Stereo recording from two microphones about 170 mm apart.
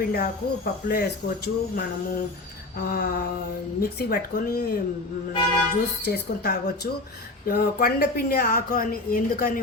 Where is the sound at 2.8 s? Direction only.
60° left (ahead or behind).